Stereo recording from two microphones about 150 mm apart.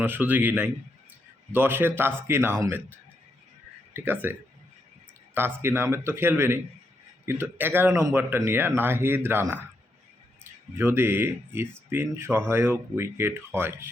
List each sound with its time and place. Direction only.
0.0 s speech: 10° right (ahead or behind)
3.9 s speech: 15° right (ahead or behind)
10.8 s speech: 15° right (ahead or behind)